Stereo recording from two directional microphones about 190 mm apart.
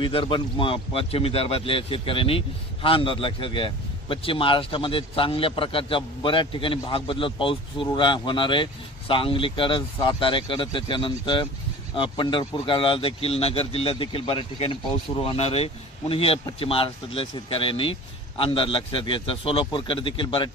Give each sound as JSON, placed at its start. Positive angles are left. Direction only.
{"t": 0.0, "sound": "speech", "side_deg": 25}